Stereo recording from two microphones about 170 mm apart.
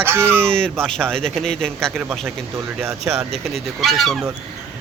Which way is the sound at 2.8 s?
15° right (ahead or behind).